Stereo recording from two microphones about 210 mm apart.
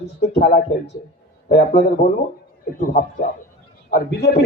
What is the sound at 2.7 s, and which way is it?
Speech, 40° left (ahead or behind).